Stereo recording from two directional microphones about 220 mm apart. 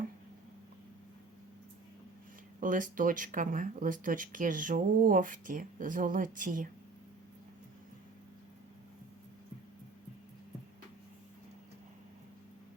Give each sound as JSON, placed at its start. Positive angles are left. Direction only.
{"t": 2.6, "sound": "speech", "side_deg": -40}